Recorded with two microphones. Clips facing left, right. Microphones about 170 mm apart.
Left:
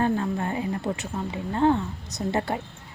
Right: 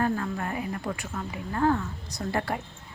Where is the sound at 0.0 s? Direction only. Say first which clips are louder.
Left 3 dB; 25° left (ahead or behind).